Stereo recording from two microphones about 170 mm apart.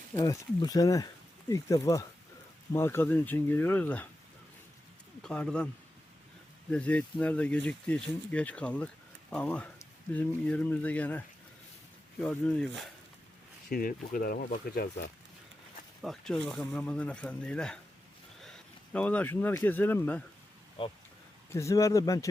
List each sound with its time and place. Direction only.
0.2 s speech: 20° left (ahead or behind)
5.2 s speech: 5° left (ahead or behind)
6.7 s speech: 5° left (ahead or behind)
12.2 s speech: 5° left (ahead or behind)
13.7 s speech: 55° left (ahead or behind)
16.0 s speech: centre (ahead or behind)
20.8 s speech: 30° left (ahead or behind)
21.5 s speech: 15° left (ahead or behind)